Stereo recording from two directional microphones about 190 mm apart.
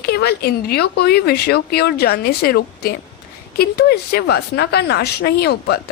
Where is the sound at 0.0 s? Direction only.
55° left (ahead or behind).